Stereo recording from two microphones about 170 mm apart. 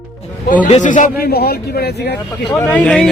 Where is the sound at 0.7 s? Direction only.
45° left (ahead or behind); by 1.9 s 65° left (ahead or behind).